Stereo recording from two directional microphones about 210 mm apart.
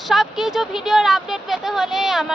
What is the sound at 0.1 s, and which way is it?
Speech, centre (ahead or behind).